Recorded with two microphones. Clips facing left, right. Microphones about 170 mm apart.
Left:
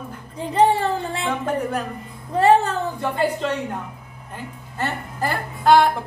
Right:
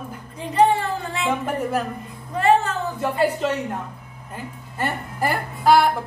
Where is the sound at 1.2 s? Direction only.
5° right (ahead or behind).